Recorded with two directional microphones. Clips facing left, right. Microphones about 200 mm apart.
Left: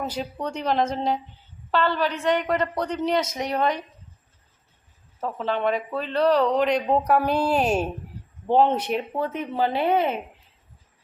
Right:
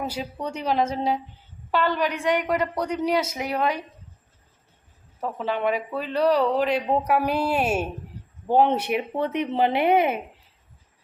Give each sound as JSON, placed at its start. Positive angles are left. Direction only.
{"t": 0.0, "sound": "speech", "side_deg": -10}
{"t": 5.2, "sound": "speech", "side_deg": -10}
{"t": 9.1, "sound": "speech", "side_deg": -20}